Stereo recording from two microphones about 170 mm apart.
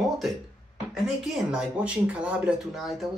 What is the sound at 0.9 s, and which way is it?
Speech, centre (ahead or behind).